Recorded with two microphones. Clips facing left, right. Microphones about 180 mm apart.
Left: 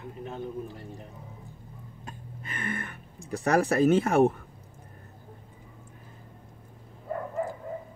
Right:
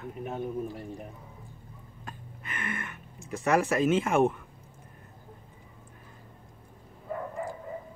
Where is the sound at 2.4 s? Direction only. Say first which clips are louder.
Left 2 dB; 35° left (ahead or behind).